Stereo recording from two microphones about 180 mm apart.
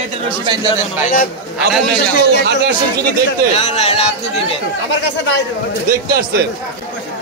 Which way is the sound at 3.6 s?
35° left (ahead or behind).